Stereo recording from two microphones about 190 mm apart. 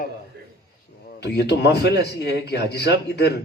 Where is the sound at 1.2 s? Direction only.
60° left (ahead or behind).